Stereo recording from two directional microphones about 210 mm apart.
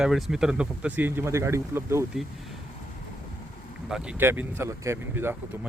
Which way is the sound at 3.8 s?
5° right (ahead or behind).